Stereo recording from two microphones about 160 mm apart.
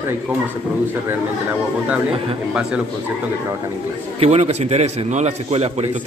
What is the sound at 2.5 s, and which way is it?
Speech, 5° right (ahead or behind).